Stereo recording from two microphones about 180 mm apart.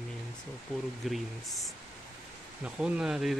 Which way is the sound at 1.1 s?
Centre (ahead or behind).